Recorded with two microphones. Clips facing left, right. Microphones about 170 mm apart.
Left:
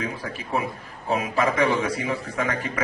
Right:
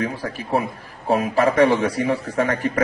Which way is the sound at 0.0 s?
35° right (ahead or behind).